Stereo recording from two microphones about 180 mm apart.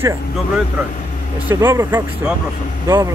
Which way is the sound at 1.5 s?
15° right (ahead or behind).